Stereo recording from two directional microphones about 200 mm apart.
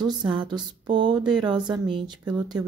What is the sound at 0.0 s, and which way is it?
Speech, 25° right (ahead or behind).